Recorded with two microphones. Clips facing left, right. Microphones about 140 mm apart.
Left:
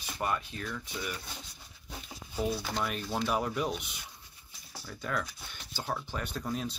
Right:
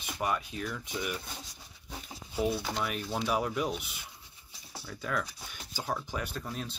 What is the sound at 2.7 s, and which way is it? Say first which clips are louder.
Speech: even; 5° right (ahead or behind).